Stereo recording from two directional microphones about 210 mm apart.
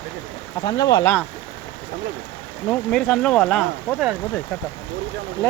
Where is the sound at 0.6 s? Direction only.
20° left (ahead or behind).